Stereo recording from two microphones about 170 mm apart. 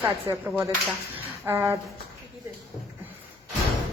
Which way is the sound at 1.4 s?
15° right (ahead or behind).